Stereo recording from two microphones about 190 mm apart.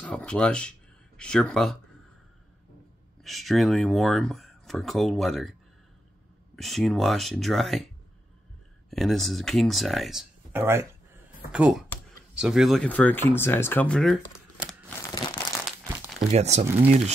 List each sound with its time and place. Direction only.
0.0 s speech: 5° left (ahead or behind)
3.3 s speech: centre (ahead or behind)
6.5 s speech: centre (ahead or behind)
8.9 s speech: centre (ahead or behind)
10.5 s speech: 10° right (ahead or behind)
15.0 s crumpling: 20° left (ahead or behind)
15.3 s crumpling: centre (ahead or behind)
16.2 s speech: 35° right (ahead or behind)